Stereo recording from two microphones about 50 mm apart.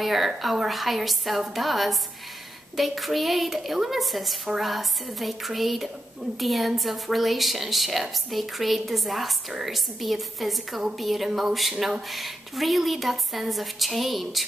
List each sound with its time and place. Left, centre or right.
0.0 s a woman's voice: centre